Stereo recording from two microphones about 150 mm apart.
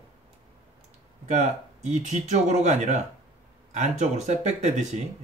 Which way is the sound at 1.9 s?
50° right (ahead or behind).